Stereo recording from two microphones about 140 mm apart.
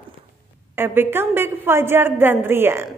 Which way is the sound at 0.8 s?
15° right (ahead or behind).